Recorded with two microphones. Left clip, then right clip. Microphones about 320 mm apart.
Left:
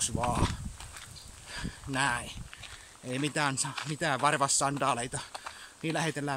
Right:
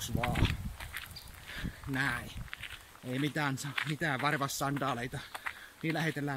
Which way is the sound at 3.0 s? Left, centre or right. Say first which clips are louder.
Left 3 dB; centre.